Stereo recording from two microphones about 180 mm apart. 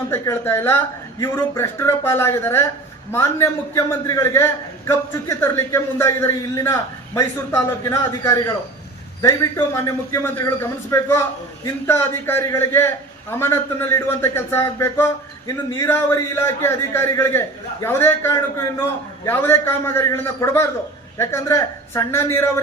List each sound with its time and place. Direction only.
0.1 s a man's voice: 15° left (ahead or behind)